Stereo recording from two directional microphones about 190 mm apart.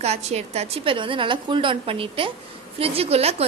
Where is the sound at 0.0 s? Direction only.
35° right (ahead or behind).